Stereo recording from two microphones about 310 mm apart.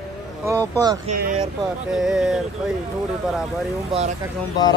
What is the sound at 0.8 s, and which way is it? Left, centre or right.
Speech, centre.